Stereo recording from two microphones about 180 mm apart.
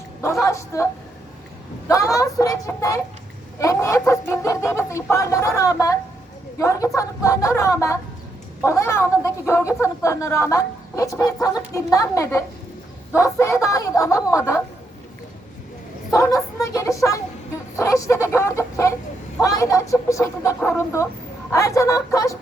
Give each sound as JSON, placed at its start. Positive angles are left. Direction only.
{"t": 0.4, "sound": "a woman's voice", "side_deg": 15}
{"t": 1.9, "sound": "a woman's voice", "side_deg": 20}
{"t": 16.1, "sound": "a woman's voice", "side_deg": 15}